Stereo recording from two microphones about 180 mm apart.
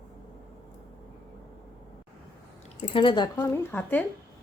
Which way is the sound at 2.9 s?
30° left (ahead or behind).